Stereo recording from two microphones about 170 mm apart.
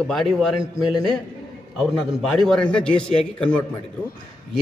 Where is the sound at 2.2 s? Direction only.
Centre (ahead or behind).